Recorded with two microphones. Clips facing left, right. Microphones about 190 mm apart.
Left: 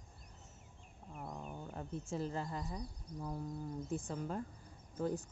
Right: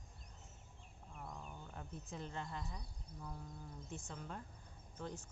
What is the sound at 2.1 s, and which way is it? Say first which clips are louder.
Speech: left 7 dB; 5° left (ahead or behind).